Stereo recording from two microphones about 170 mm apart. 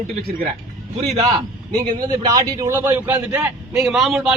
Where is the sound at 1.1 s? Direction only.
35° right (ahead or behind).